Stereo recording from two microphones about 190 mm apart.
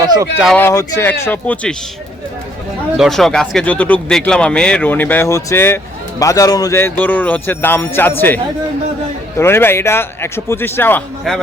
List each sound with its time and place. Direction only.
0.0 s a sound: 20° right (ahead or behind)
0.5 s speech: 15° left (ahead or behind)
3.0 s speech: centre (ahead or behind)
9.4 s speech: 10° left (ahead or behind)